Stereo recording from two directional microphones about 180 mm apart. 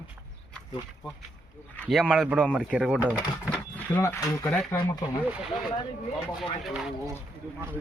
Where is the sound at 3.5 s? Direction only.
10° left (ahead or behind).